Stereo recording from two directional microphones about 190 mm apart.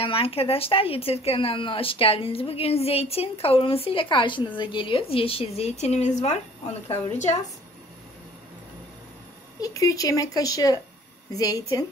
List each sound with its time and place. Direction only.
0.0 s a woman's voice: 30° left (ahead or behind)
9.6 s speech: 20° left (ahead or behind)